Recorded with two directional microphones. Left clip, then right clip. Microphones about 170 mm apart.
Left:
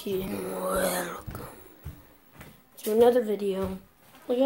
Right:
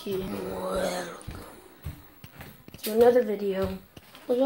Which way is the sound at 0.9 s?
20° left (ahead or behind).